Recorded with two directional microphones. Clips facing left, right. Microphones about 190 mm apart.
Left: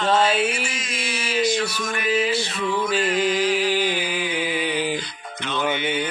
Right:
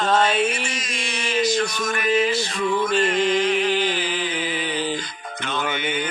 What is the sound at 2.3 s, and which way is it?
Music, 45° right (ahead or behind).